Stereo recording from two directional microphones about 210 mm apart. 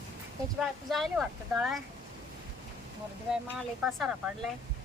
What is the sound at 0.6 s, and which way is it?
Speech, centre (ahead or behind).